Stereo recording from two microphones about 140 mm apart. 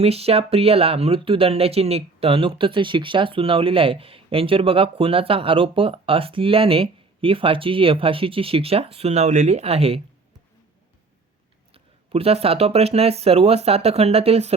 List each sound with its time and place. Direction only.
0.0 s speech: 45° right (ahead or behind)
11.7 s speech: 45° right (ahead or behind)